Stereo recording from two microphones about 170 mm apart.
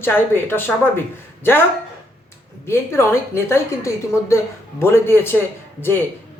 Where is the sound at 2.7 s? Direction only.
15° left (ahead or behind).